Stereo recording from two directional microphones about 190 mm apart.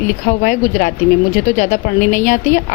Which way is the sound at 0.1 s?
40° left (ahead or behind).